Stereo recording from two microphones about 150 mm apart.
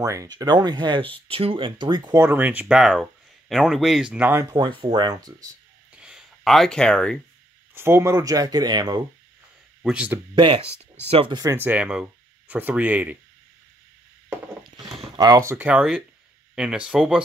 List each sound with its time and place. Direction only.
0.0 s speech: 20° right (ahead or behind)
2.1 s speech: 15° right (ahead or behind)
4.5 s speech: 30° right (ahead or behind)
5.9 s a sound: 5° right (ahead or behind)
7.7 s speech: 15° right (ahead or behind)
9.8 s speech: 10° right (ahead or behind)
10.3 s speech: 35° right (ahead or behind)
11.3 s speech: 20° right (ahead or behind)
15.1 s speech: 25° right (ahead or behind); by 17.2 s 5° right (ahead or behind)